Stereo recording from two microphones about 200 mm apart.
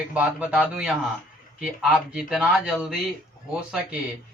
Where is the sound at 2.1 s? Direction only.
Centre (ahead or behind).